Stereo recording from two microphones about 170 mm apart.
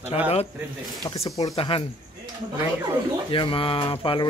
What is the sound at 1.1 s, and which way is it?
Speech, 20° left (ahead or behind).